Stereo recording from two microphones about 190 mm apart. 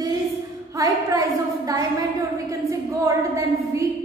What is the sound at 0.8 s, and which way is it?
A woman's voice, 20° right (ahead or behind).